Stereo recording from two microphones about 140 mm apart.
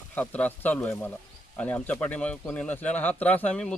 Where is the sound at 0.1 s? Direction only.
10° left (ahead or behind).